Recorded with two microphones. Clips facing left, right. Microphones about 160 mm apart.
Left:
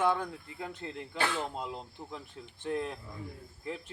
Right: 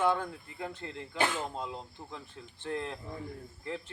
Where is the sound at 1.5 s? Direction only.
15° left (ahead or behind).